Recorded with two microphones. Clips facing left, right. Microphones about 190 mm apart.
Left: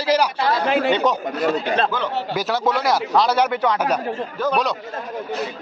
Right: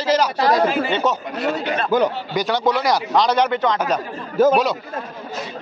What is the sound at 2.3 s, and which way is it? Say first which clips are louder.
A man's voice: right 2 dB; 5° left (ahead or behind).